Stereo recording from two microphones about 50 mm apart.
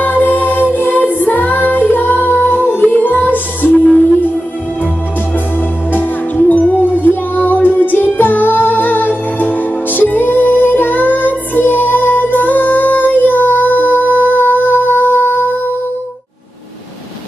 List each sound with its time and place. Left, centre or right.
0.2 s music: left
5.9 s music: left